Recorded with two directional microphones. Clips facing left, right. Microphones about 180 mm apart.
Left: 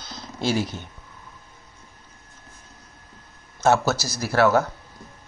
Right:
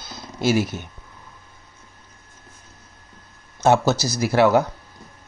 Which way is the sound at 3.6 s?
20° right (ahead or behind).